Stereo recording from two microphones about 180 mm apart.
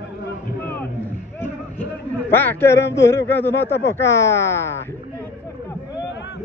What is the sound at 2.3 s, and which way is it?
Speech, 10° left (ahead or behind).